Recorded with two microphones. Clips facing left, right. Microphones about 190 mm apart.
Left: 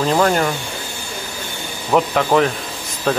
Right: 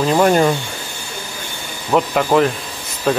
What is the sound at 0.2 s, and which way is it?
Speech, 20° right (ahead or behind).